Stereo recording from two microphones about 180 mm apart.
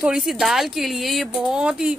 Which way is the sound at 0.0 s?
5° right (ahead or behind).